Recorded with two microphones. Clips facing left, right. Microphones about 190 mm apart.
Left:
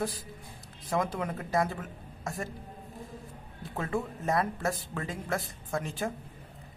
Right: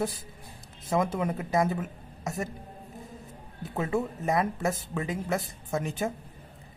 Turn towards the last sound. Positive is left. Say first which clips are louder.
# right 3 dB
turn(degrees=-20)  # may be behind; listen again after turning